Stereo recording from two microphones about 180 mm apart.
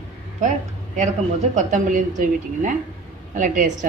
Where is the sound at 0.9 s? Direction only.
40° right (ahead or behind).